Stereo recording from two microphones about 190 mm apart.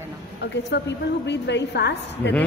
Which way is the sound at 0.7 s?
65° left (ahead or behind).